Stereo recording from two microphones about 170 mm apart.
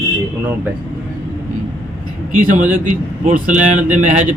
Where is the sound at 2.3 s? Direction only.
50° right (ahead or behind).